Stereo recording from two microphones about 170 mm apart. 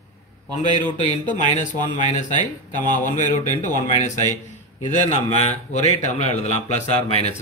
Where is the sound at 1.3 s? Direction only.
50° left (ahead or behind).